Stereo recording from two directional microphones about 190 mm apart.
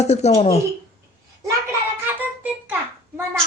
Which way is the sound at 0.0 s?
35° left (ahead or behind).